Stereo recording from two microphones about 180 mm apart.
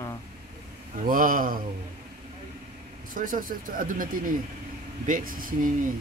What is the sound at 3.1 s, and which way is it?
A man's voice, 50° right (ahead or behind).